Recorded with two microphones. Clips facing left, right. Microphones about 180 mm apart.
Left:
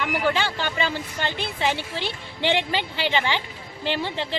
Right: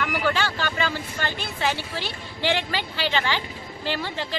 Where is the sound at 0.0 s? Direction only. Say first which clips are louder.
Left 1 dB; 20° left (ahead or behind).